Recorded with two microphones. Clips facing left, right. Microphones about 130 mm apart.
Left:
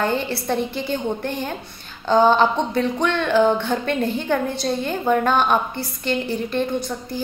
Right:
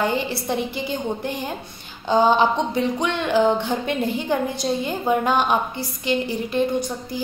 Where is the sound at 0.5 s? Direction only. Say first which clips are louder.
Left 4 dB; 15° right (ahead or behind).